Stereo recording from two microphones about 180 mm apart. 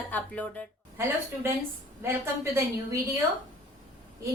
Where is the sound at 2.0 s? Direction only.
15° right (ahead or behind).